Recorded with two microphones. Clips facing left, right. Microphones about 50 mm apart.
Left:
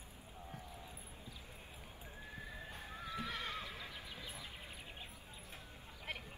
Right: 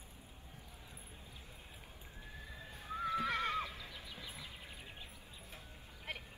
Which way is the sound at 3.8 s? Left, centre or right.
Left.